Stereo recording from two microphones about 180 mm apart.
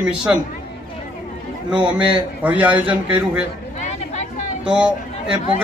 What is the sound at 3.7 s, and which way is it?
Chatter, 40° left (ahead or behind).